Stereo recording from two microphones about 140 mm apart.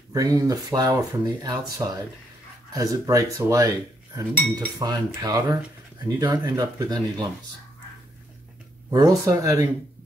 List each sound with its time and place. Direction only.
0.1 s cutlery: 25° right (ahead or behind)
8.9 s cutlery: 25° right (ahead or behind)